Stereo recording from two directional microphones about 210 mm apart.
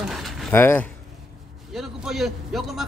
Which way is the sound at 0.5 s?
10° left (ahead or behind).